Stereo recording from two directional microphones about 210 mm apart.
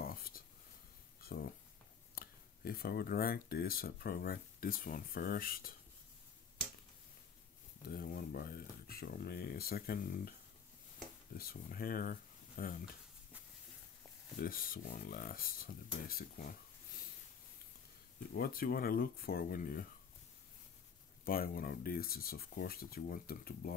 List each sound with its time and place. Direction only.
0.0 s a sound: 45° left (ahead or behind)
2.1 s speech: 45° left (ahead or behind)
7.8 s speech: 45° left (ahead or behind)
11.3 s speech: 45° left (ahead or behind)
14.4 s speech: 45° left (ahead or behind)
18.3 s speech: 45° left (ahead or behind)
21.2 s speech: 45° left (ahead or behind)